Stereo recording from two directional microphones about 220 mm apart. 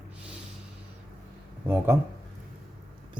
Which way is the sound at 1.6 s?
10° right (ahead or behind).